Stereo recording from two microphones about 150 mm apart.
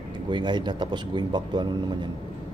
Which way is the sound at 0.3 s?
30° right (ahead or behind).